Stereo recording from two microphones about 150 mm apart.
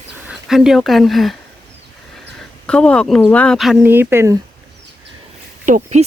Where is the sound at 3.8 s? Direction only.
15° right (ahead or behind).